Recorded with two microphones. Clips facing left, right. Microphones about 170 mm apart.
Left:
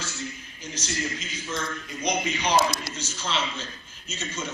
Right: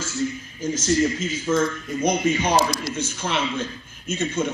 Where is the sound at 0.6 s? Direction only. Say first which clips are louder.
Right 12 dB; 45° right (ahead or behind).